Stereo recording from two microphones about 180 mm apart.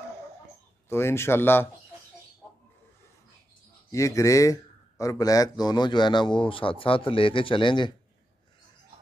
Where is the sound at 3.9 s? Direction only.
15° left (ahead or behind).